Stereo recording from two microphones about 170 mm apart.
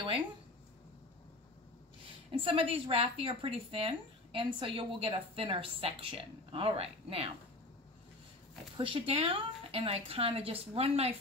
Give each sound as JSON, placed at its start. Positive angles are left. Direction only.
{"t": 2.3, "sound": "speech", "side_deg": -30}
{"t": 8.7, "sound": "speech", "side_deg": -30}